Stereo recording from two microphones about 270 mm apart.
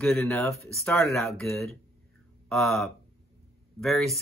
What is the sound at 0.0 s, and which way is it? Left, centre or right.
Speech, centre.